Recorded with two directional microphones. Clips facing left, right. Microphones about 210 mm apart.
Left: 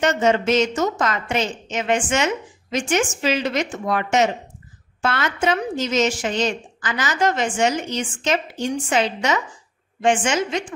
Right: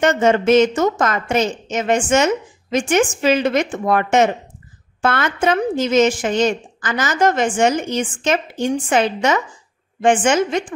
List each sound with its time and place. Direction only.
0.0 s a woman's voice: 50° right (ahead or behind)